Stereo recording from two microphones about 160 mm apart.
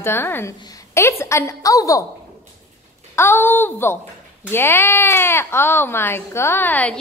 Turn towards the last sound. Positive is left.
turn(degrees=10)  # may be behind; listen again after turning